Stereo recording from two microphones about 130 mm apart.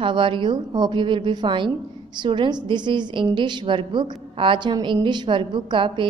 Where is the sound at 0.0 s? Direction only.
40° right (ahead or behind).